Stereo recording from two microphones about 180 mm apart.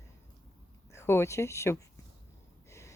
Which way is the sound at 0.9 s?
15° left (ahead or behind).